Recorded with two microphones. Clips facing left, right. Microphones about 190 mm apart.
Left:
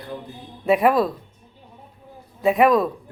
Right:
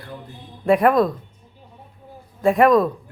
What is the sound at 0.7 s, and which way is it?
Speech, centre (ahead or behind).